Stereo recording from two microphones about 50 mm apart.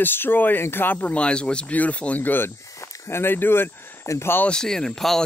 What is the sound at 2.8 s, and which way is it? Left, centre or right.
Speech, left.